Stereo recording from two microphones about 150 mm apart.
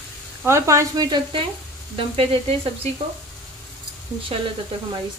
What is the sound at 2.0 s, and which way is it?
Speech, 40° right (ahead or behind).